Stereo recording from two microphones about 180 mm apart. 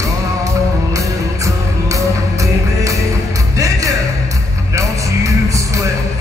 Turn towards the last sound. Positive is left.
turn(degrees=-20)  # may be behind; listen again after turning